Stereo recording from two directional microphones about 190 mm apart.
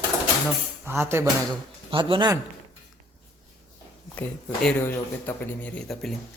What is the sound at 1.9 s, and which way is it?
Speech, 25° right (ahead or behind).